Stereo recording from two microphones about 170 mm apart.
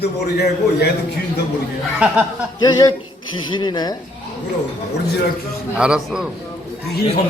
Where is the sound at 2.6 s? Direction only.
20° left (ahead or behind).